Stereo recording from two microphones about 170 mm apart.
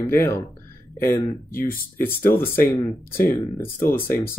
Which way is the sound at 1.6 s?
60° left (ahead or behind).